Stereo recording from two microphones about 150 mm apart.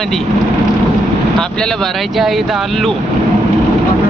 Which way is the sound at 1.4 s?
5° left (ahead or behind).